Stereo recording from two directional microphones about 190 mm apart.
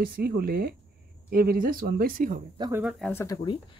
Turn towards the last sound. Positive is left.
turn(degrees=20)  # may be behind; listen again after turning